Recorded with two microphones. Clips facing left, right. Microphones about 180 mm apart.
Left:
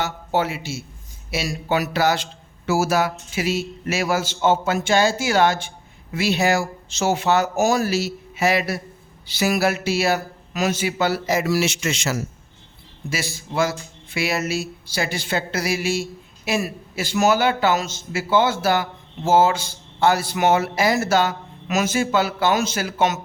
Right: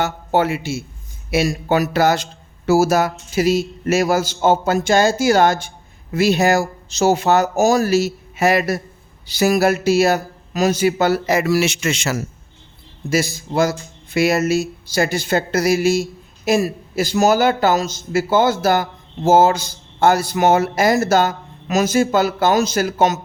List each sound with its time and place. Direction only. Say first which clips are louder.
0.0 s a man's voice: right 4 dB; 50° right (ahead or behind)
13.1 s a man's voice: right 9 dB; 40° right (ahead or behind)